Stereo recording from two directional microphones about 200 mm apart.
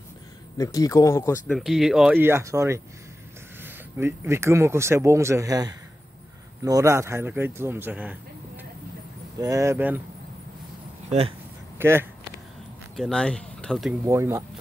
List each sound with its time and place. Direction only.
0.6 s speech: 15° left (ahead or behind)
1.5 s speech: 5° right (ahead or behind)
9.4 s speech: 15° right (ahead or behind)
11.1 s speech: 30° right (ahead or behind)
11.8 s speech: 10° right (ahead or behind)
12.9 s speech: 5° left (ahead or behind)
14.0 s speech: 15° right (ahead or behind)